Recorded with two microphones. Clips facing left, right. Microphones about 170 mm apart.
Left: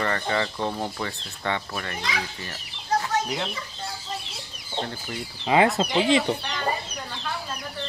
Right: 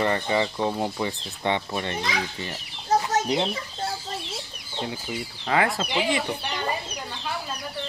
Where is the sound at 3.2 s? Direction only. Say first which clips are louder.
Right 5 dB; 25° right (ahead or behind).